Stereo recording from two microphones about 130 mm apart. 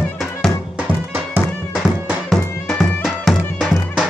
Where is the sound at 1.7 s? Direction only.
5° right (ahead or behind).